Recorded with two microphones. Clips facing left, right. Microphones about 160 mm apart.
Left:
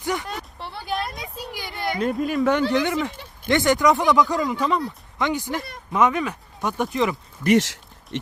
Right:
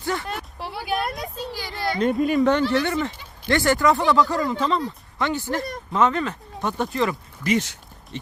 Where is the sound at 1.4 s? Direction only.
15° left (ahead or behind).